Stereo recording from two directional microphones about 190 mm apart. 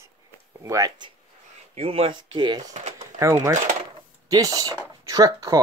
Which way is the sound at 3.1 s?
15° right (ahead or behind).